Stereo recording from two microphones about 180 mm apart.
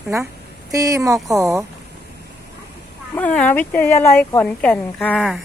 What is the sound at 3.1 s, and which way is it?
A woman's voice, 5° left (ahead or behind).